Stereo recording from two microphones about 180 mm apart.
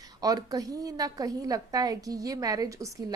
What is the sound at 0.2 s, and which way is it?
A woman's voice, 20° right (ahead or behind).